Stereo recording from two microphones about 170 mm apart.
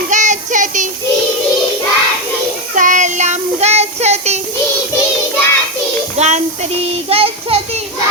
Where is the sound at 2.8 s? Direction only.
50° right (ahead or behind).